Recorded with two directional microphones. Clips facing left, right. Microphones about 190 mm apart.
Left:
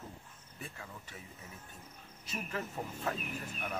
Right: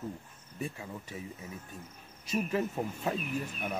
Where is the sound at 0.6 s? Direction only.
15° right (ahead or behind).